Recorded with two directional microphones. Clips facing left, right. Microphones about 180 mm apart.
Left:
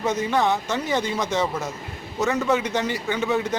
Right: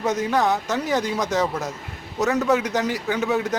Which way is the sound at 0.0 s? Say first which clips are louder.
Right 1 dB; centre (ahead or behind).